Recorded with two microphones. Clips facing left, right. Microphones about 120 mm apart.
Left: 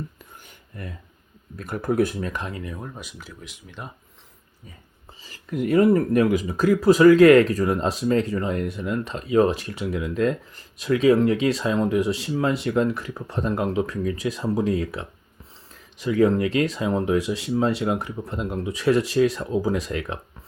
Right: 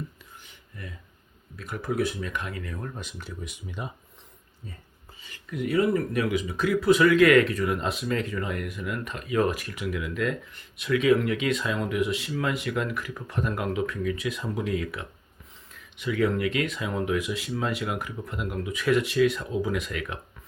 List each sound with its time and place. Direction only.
0.4 s a sound: 45° left (ahead or behind)
1.5 s speech: 45° left (ahead or behind); by 3.9 s centre (ahead or behind)
5.2 s speech: 35° left (ahead or behind)